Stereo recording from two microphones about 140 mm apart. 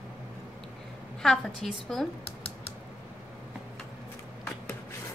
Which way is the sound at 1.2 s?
Centre (ahead or behind).